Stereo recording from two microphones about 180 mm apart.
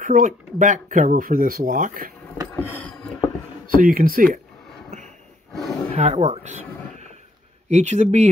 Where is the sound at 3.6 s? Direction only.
50° right (ahead or behind).